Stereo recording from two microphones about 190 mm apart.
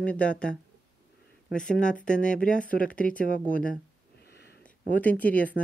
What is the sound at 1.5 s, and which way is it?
Speech, 5° left (ahead or behind).